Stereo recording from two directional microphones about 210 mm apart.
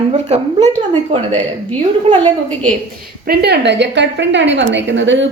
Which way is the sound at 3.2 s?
50° right (ahead or behind).